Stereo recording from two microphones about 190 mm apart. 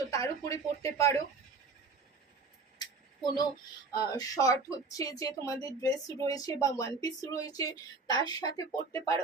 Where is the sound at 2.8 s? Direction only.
20° left (ahead or behind).